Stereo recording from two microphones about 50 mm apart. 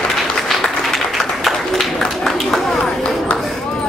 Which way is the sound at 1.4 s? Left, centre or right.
Centre.